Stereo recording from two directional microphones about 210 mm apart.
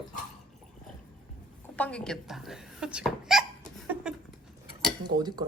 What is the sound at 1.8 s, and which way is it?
Speech, 5° left (ahead or behind).